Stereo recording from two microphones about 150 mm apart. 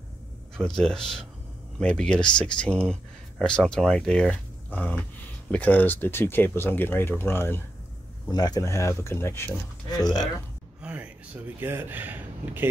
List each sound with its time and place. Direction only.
0.7 s speech: 5° left (ahead or behind)
8.3 s speech: 25° left (ahead or behind)
10.8 s a sound: 10° right (ahead or behind)